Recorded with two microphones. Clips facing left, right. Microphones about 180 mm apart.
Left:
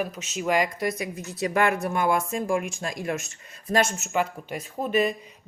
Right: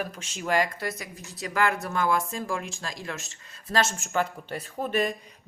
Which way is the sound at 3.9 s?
5° left (ahead or behind).